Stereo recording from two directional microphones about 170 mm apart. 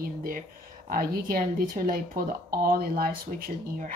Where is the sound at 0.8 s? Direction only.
55° right (ahead or behind).